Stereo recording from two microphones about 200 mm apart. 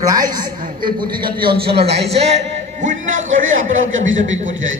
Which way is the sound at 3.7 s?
75° right (ahead or behind).